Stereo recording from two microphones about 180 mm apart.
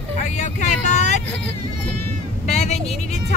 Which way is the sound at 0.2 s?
40° left (ahead or behind).